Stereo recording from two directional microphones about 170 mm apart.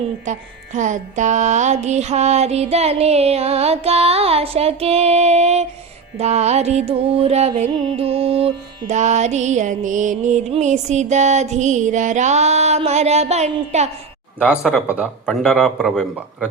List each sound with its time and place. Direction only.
0.3 s music: 45° right (ahead or behind)
14.4 s speech: 5° left (ahead or behind)
14.8 s speech: 10° right (ahead or behind)